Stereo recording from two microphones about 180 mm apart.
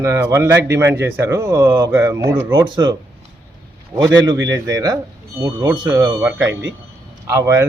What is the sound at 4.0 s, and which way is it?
A man's voice, 25° right (ahead or behind).